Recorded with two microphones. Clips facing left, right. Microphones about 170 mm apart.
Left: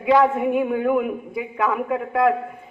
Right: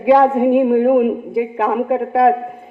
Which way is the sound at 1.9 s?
50° right (ahead or behind).